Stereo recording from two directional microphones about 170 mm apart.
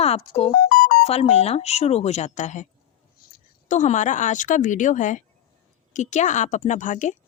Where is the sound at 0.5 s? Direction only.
60° left (ahead or behind).